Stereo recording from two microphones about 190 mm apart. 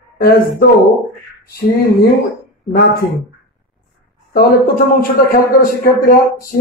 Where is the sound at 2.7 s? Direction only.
50° left (ahead or behind).